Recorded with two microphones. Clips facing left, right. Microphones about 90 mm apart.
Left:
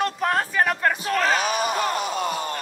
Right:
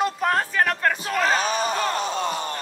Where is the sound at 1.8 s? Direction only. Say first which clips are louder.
Even; 35° right (ahead or behind).